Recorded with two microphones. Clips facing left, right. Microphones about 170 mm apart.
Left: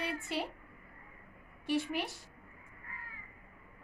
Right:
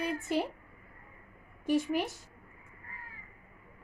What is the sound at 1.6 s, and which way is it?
Speech, 45° right (ahead or behind).